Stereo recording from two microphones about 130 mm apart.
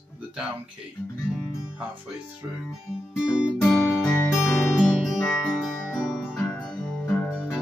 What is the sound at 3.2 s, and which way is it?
Music, 5° right (ahead or behind).